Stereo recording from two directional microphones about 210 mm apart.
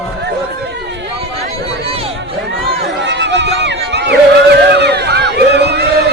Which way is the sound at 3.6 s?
55° right (ahead or behind).